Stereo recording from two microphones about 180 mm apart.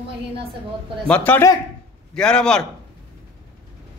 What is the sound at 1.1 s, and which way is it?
A man's voice, 10° left (ahead or behind).